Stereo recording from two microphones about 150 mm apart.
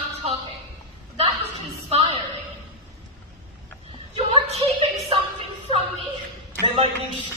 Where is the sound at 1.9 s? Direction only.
35° right (ahead or behind).